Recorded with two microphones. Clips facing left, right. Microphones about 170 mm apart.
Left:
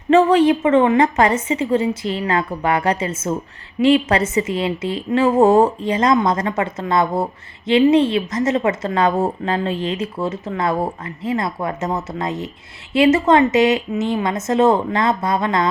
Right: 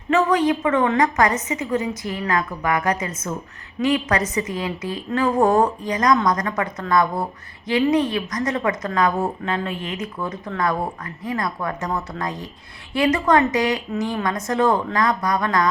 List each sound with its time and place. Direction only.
0.1 s a woman's voice: 30° left (ahead or behind)